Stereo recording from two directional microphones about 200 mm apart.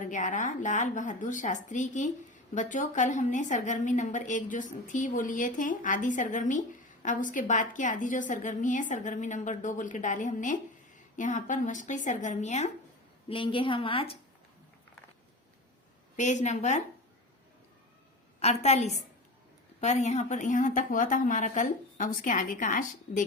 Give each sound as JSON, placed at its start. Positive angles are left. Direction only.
{"t": 0.0, "sound": "a woman's voice", "side_deg": 40}
{"t": 16.1, "sound": "a woman's voice", "side_deg": 35}
{"t": 18.3, "sound": "a woman's voice", "side_deg": 35}